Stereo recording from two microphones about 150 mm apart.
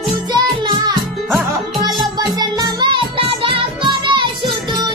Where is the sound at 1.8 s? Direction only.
25° right (ahead or behind).